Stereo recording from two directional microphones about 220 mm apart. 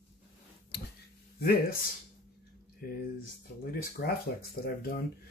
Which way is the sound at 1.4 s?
40° left (ahead or behind).